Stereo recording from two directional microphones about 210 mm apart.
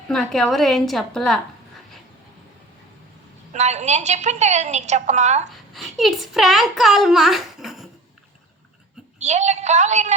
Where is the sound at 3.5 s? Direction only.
35° right (ahead or behind).